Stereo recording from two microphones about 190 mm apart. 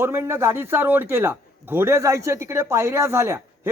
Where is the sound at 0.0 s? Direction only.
15° right (ahead or behind).